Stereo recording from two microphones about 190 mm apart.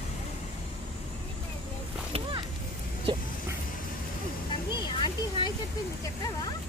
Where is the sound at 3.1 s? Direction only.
25° right (ahead or behind).